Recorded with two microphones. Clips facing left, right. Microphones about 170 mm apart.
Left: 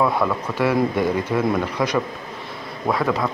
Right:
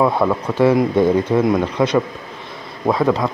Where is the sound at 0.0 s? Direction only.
25° right (ahead or behind).